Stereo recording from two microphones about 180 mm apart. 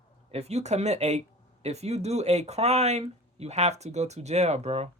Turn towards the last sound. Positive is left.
turn(degrees=-35)  # may be behind; listen again after turning